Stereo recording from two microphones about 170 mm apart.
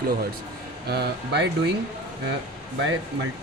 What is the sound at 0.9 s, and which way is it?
Speech, 80° right.